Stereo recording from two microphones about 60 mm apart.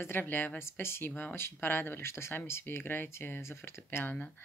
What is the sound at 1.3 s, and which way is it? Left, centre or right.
Speech, left.